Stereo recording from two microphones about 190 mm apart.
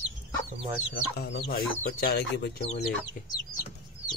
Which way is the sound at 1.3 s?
55° left (ahead or behind).